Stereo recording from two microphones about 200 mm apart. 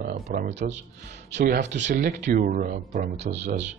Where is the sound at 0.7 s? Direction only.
60° right (ahead or behind).